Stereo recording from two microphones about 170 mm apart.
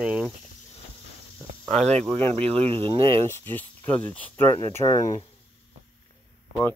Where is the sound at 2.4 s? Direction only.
35° right (ahead or behind).